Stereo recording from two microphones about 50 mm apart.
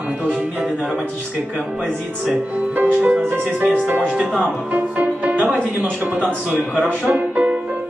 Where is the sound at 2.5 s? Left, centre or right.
Right.